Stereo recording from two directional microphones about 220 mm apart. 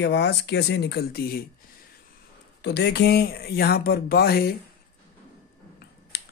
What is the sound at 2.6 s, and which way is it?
Speech, 50° left (ahead or behind).